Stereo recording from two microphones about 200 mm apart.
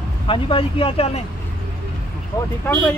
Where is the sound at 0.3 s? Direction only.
30° left (ahead or behind).